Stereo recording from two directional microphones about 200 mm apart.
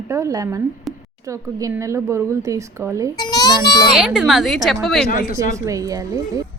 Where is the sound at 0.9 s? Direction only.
Centre (ahead or behind).